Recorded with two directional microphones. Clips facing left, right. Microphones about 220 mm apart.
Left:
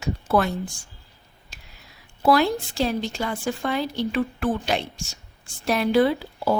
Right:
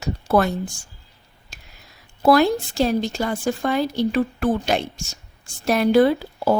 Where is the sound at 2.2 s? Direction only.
45° right (ahead or behind).